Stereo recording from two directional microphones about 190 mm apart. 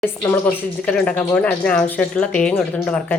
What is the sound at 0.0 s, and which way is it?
Speech, 10° left (ahead or behind).